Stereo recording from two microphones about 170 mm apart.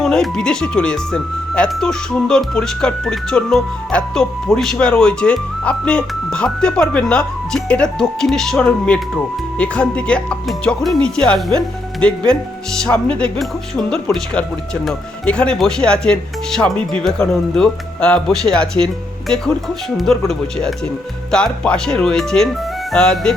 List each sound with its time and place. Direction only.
0.0 s speech: 5° left (ahead or behind)